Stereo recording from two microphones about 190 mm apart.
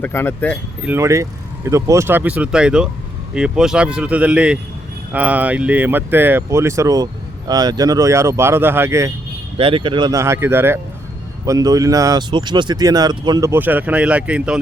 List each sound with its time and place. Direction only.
0.0 s speech: 10° left (ahead or behind)
0.8 s speech: 10° right (ahead or behind)
9.6 s speech: 30° right (ahead or behind); by 14.6 s 5° right (ahead or behind)